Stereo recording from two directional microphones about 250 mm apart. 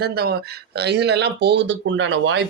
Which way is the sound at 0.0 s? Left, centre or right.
Right.